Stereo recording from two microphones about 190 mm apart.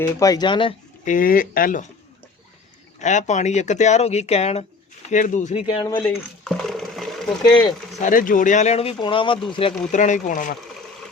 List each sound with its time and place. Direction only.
0.0 s speech: 20° left (ahead or behind)
1.0 s speech: 45° left (ahead or behind)
3.0 s speech: 40° left (ahead or behind)
5.6 s speech: 20° left (ahead or behind)
6.0 s a sound: 5° left (ahead or behind)
8.0 s speech: 45° left (ahead or behind)